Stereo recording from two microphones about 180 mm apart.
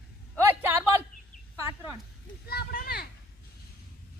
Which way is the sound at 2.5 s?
60° left (ahead or behind).